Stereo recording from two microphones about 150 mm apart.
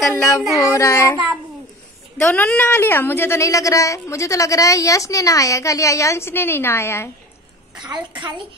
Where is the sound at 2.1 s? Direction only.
15° left (ahead or behind).